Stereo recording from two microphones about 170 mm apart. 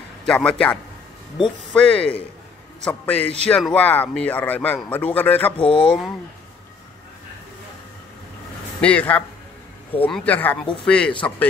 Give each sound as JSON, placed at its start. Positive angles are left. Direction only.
{"t": 0.2, "sound": "a man's voice", "side_deg": 5}
{"t": 8.8, "sound": "a man's voice", "side_deg": 10}